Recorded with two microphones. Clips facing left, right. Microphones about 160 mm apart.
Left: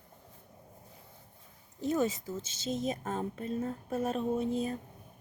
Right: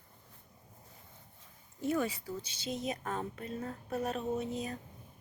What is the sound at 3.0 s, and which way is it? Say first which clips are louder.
Speech: left 3 dB; 30° left (ahead or behind).